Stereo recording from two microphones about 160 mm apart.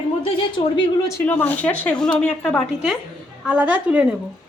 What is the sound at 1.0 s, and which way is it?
Speech, 15° left (ahead or behind).